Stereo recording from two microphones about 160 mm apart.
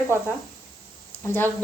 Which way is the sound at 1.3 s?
10° left (ahead or behind).